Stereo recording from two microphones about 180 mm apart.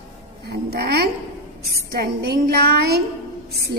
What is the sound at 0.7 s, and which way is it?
A woman's voice, 60° right (ahead or behind).